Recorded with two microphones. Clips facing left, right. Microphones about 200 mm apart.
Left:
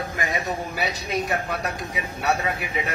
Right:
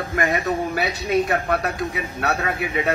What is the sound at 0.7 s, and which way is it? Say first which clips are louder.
Speech: right 6 dB; 60° right (ahead or behind).